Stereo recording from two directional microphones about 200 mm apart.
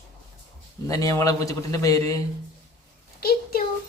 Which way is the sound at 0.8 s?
15° left (ahead or behind).